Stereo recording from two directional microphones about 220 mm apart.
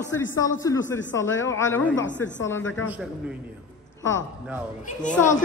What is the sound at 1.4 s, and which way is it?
Speech, 10° left (ahead or behind).